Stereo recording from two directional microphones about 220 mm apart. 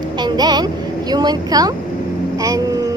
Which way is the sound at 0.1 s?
20° right (ahead or behind).